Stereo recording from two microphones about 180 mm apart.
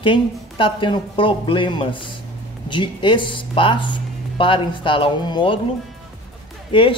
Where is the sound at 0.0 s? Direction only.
30° left (ahead or behind).